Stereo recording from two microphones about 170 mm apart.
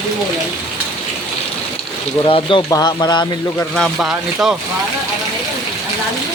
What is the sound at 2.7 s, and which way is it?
Speech, 20° left (ahead or behind).